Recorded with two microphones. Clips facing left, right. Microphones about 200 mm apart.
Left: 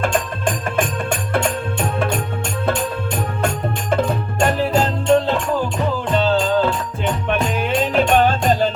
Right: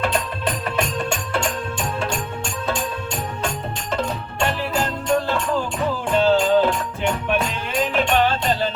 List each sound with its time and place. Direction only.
0.0 s music: 50° left (ahead or behind)
3.4 s music: 55° left (ahead or behind); by 5.3 s 25° left (ahead or behind)
6.1 s music: 15° right (ahead or behind)
7.9 s music: 45° left (ahead or behind)